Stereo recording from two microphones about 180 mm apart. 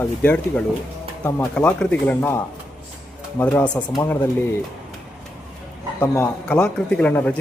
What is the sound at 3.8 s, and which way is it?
Speech, 20° left (ahead or behind).